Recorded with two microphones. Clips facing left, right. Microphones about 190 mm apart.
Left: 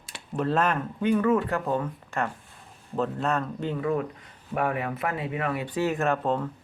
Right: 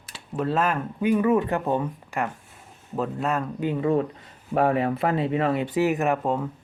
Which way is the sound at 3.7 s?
25° right (ahead or behind).